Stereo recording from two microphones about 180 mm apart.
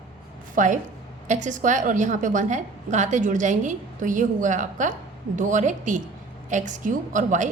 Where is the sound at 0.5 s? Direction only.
45° right (ahead or behind).